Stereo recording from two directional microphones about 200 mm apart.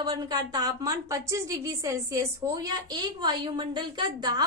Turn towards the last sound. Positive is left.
turn(degrees=-20)  # may be behind; listen again after turning